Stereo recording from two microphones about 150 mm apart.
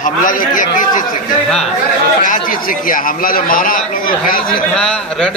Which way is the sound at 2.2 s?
70° left (ahead or behind).